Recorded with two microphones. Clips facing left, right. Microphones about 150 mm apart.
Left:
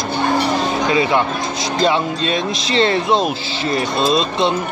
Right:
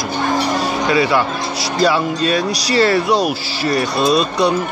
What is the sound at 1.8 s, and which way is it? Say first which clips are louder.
Speech: right 2 dB; 25° left (ahead or behind).